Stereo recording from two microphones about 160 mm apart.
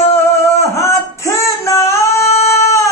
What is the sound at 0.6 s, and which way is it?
Singing, 20° left (ahead or behind).